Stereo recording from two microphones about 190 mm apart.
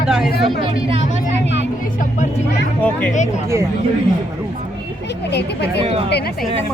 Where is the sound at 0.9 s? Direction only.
30° right (ahead or behind).